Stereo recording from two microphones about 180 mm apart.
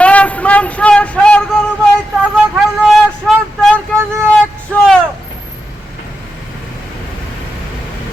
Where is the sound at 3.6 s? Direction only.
5° left (ahead or behind).